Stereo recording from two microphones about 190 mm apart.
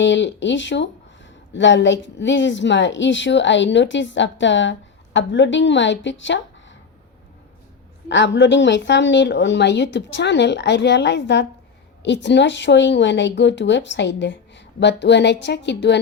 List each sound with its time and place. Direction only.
0.0 s speech: 70° left (ahead or behind)
8.0 s speech: 70° left (ahead or behind)